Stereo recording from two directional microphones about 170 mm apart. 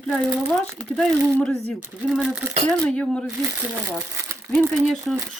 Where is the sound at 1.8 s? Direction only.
5° right (ahead or behind).